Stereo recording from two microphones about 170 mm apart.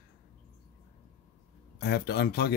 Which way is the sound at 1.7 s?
70° left (ahead or behind).